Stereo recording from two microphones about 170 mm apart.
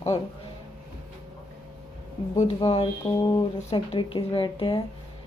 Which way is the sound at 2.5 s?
35° left (ahead or behind).